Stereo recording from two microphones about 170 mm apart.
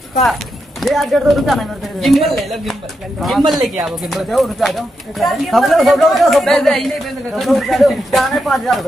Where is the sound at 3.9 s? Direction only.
Centre (ahead or behind).